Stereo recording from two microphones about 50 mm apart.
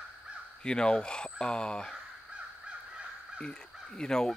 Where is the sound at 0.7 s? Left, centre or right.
Centre.